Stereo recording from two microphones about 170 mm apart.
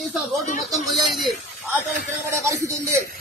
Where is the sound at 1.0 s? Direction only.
Centre (ahead or behind).